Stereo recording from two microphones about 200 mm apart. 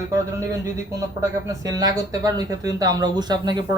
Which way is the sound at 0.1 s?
15° right (ahead or behind).